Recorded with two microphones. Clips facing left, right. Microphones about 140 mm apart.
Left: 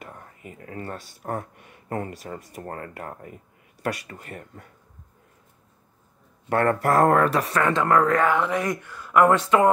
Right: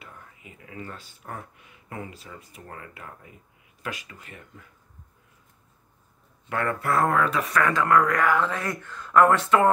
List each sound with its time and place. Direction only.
0.0 s speech: 45° left (ahead or behind)
1.3 s speech: 55° left (ahead or behind)
6.5 s speech: 45° left (ahead or behind)
7.4 s speech: 30° left (ahead or behind)